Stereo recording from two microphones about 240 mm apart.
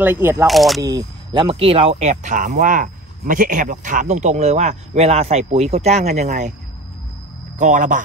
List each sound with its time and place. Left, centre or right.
0.0 s speech: centre
0.9 s speech: centre
7.5 s speech: right